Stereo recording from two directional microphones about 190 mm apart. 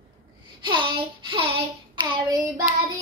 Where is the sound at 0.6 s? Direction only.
25° right (ahead or behind).